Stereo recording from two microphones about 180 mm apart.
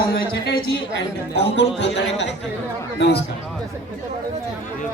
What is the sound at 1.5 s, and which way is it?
Speech, 75° left (ahead or behind).